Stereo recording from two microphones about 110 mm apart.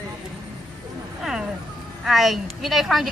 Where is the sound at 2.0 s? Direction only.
Centre (ahead or behind).